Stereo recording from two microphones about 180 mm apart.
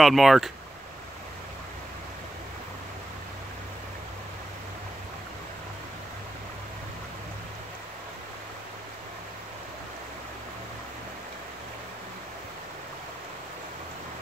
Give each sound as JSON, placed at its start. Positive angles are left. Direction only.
{"t": 0.0, "sound": "speech", "side_deg": 0}